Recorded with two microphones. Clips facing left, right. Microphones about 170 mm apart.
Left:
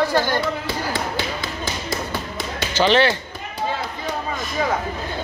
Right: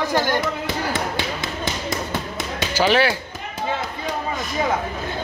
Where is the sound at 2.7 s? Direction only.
10° right (ahead or behind).